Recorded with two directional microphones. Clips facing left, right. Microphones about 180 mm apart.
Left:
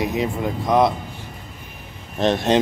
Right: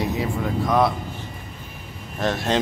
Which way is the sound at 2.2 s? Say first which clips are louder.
Left 5 dB; 20° left (ahead or behind).